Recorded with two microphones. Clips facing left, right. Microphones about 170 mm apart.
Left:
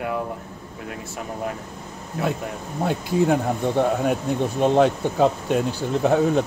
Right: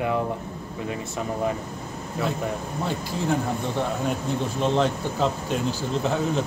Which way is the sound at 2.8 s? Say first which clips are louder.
Left 7 dB; 55° left (ahead or behind).